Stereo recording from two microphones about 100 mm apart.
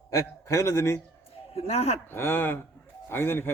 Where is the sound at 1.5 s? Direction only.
85° left.